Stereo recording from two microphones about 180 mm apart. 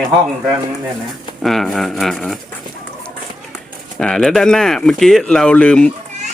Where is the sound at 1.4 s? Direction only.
Centre (ahead or behind).